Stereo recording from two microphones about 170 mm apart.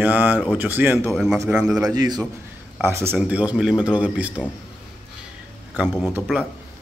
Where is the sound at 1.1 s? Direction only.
Centre (ahead or behind).